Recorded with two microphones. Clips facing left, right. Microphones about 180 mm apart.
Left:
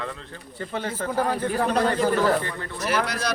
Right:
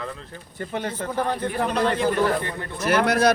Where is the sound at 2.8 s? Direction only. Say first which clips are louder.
Right 6 dB; 55° right (ahead or behind).